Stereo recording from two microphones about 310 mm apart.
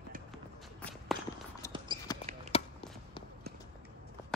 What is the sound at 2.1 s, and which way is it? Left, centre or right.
Basketball bounce, centre.